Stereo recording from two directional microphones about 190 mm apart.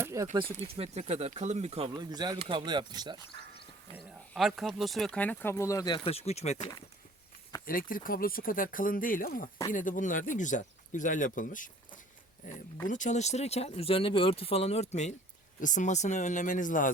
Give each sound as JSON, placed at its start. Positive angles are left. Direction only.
{"t": 0.0, "sound": "a sound", "side_deg": -15}
{"t": 0.5, "sound": "speech", "side_deg": -35}
{"t": 1.9, "sound": "speech", "side_deg": -20}
{"t": 3.9, "sound": "speech", "side_deg": 0}
{"t": 7.6, "sound": "speech", "side_deg": 50}
{"t": 12.9, "sound": "speech", "side_deg": 40}